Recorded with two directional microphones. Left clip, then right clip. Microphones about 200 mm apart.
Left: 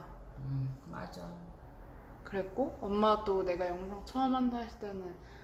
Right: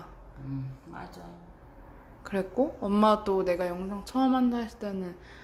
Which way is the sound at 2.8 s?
40° right (ahead or behind).